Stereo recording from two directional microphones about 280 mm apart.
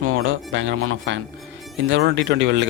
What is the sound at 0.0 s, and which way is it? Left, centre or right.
Speech, right.